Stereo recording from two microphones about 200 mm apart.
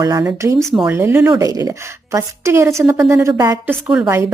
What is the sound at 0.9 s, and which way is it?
A woman's voice, 10° right (ahead or behind).